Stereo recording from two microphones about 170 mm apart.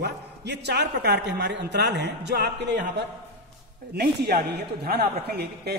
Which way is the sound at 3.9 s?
70° right (ahead or behind).